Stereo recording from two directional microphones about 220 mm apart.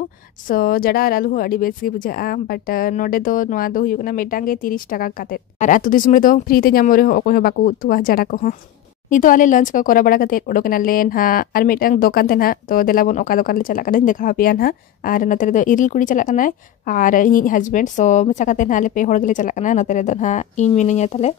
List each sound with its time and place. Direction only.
0.5 s speech: 40° left (ahead or behind)